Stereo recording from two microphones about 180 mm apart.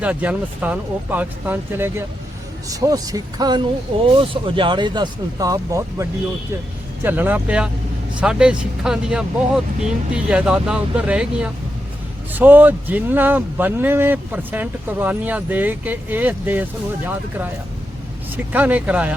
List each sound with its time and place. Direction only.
0.0 s speech: 10° right (ahead or behind)
18.5 s speech: 10° right (ahead or behind)